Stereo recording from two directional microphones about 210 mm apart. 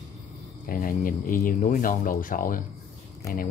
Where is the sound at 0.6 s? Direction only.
40° left (ahead or behind).